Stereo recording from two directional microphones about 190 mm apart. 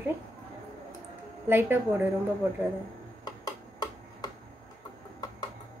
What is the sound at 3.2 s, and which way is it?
Tick-tock, 20° left (ahead or behind).